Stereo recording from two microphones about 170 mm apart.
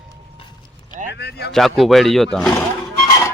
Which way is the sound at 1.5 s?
Centre (ahead or behind).